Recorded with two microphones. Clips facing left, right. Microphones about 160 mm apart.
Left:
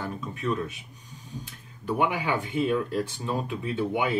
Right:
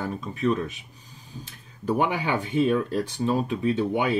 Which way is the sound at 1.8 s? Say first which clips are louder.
Right 2 dB; 35° right (ahead or behind).